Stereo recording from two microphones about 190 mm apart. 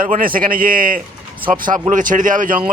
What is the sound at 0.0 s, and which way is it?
Speech, 50° right (ahead or behind).